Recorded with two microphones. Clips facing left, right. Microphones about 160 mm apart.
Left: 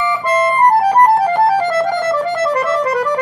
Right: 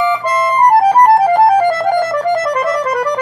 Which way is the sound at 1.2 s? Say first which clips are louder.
Right 4 dB; 15° right (ahead or behind).